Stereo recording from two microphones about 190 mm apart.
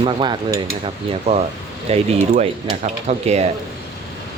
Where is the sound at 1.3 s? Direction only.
30° right (ahead or behind).